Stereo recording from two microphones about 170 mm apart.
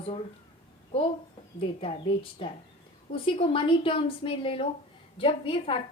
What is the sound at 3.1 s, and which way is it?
A woman's voice, 30° left (ahead or behind).